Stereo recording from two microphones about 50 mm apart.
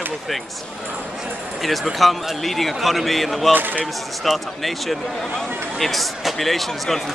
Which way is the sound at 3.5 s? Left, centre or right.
Right.